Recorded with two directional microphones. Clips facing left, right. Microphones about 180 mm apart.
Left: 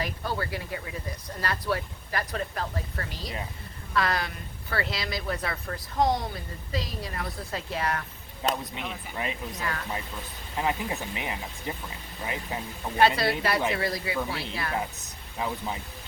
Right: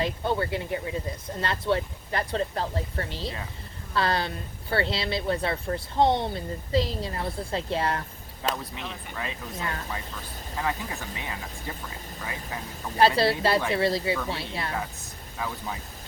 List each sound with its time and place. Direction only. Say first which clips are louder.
0.0 s speech: right 5 dB; 25° right (ahead or behind)
8.6 s speech: left 1 dB; 15° left (ahead or behind)
9.6 s speech: right 3 dB; 25° right (ahead or behind)
10.6 s speech: left 2 dB; 20° left (ahead or behind)
13.0 s speech: right 2 dB; 30° right (ahead or behind)
14.7 s speech: left 1 dB; 20° left (ahead or behind)